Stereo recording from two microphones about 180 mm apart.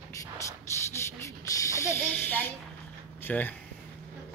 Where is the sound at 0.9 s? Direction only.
15° left (ahead or behind).